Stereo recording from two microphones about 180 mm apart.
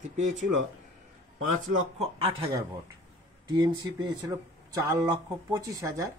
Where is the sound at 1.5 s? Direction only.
45° right (ahead or behind).